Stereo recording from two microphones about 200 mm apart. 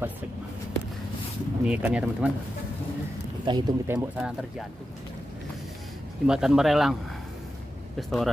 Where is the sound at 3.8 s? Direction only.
10° right (ahead or behind).